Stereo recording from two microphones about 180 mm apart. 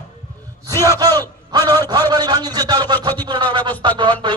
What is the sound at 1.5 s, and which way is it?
A man's voice, 20° right (ahead or behind).